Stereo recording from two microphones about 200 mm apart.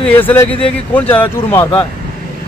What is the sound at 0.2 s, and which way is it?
Speech, 10° left (ahead or behind).